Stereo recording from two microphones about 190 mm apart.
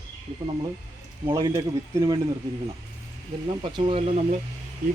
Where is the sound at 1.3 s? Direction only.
15° right (ahead or behind).